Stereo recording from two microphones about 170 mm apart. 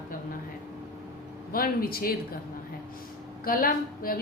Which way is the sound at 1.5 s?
60° left (ahead or behind).